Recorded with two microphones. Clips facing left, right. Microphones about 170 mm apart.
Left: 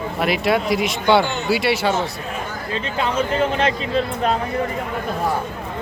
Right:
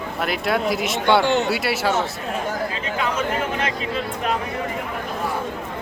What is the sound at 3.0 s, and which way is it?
Speech, 30° left (ahead or behind).